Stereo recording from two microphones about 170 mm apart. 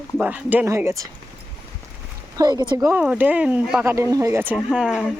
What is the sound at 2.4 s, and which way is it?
Speech, 25° right (ahead or behind).